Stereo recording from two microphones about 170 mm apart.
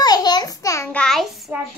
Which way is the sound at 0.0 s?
25° left (ahead or behind).